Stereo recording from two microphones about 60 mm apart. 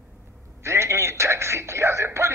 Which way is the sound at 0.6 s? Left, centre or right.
Right.